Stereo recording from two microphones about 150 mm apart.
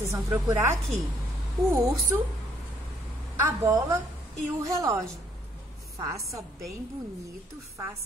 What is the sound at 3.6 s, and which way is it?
A woman's voice, 20° right (ahead or behind).